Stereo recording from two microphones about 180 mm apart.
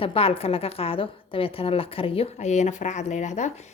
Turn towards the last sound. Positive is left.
turn(degrees=40)  # may be behind; listen again after turning